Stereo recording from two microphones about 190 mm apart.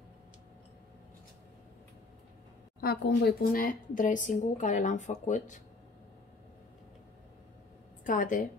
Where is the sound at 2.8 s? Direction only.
60° left (ahead or behind).